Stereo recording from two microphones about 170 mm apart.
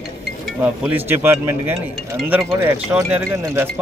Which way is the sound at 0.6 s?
10° right (ahead or behind).